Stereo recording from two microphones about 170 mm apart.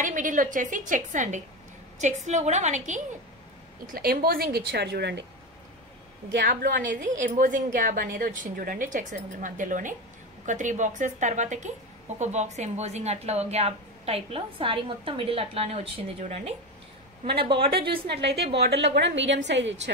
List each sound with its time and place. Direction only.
0.0 s a woman's voice: 50° right (ahead or behind)
3.8 s a woman's voice: 55° right (ahead or behind); by 5.2 s 80° right
6.4 s a woman's voice: 55° right (ahead or behind); by 18.0 s 30° right (ahead or behind)
18.1 s a woman's voice: 75° right (ahead or behind)
18.9 s a woman's voice: 90° right